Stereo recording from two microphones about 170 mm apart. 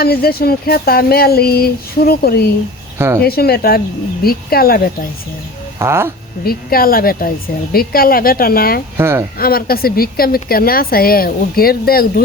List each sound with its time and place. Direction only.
0.0 s a woman's voice: 65° left (ahead or behind)
5.8 s speech: 15° right (ahead or behind)
6.4 s a woman's voice: 60° left (ahead or behind)
9.0 s speech: 15° right (ahead or behind)
9.4 s a woman's voice: 60° left (ahead or behind)